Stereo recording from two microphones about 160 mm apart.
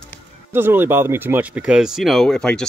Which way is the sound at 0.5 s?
15° right (ahead or behind).